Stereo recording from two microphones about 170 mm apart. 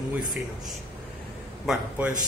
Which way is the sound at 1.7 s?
10° right (ahead or behind).